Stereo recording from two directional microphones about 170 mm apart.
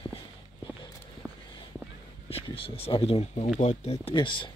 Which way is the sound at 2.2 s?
35° left (ahead or behind).